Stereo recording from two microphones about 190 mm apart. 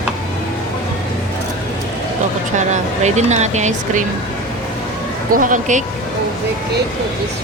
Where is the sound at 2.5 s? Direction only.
40° right (ahead or behind).